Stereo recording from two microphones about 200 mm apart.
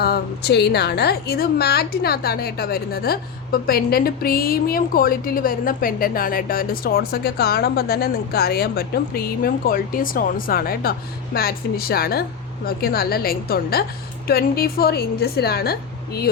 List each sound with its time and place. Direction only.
0.0 s a woman's voice: 55° left (ahead or behind)